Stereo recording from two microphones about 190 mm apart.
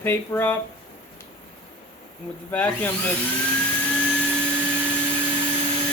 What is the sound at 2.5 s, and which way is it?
Speech, 10° left (ahead or behind).